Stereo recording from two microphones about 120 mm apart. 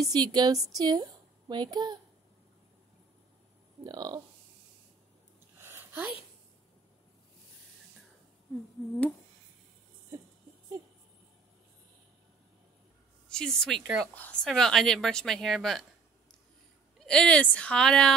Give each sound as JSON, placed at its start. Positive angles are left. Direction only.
{"t": 0.0, "sound": "a woman's voice", "side_deg": -35}
{"t": 3.8, "sound": "a woman's voice", "side_deg": -30}
{"t": 5.6, "sound": "a sound", "side_deg": -20}
{"t": 13.3, "sound": "a woman's voice", "side_deg": 5}
{"t": 17.0, "sound": "speech", "side_deg": 5}